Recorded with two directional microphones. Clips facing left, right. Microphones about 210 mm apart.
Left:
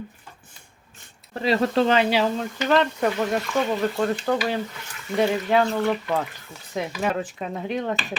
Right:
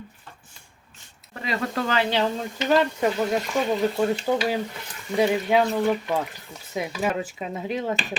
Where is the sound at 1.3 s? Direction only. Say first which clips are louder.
Left 7 dB; 30° left (ahead or behind).